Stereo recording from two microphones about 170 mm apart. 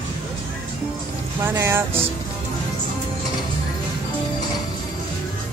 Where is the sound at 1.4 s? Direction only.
15° right (ahead or behind).